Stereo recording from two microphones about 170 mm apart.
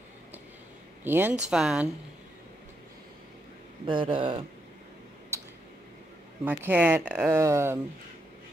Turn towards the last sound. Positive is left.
turn(degrees=-15)  # may be behind; listen again after turning